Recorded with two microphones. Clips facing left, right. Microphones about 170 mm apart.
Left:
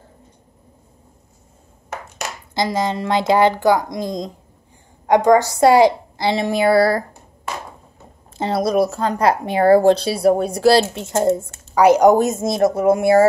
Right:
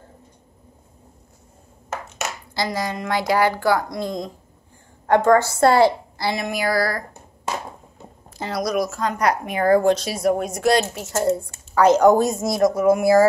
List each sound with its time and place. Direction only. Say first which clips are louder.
2.5 s speech: left 6 dB; 20° left (ahead or behind)
8.4 s speech: left 5 dB; 25° left (ahead or behind)